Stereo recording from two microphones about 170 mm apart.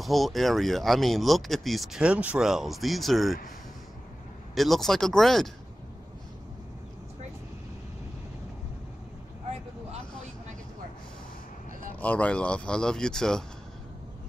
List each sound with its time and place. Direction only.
0.0 s speech: centre (ahead or behind)
4.6 s speech: centre (ahead or behind)
9.5 s vehicle: 40° right (ahead or behind)
12.0 s speech: 10° left (ahead or behind)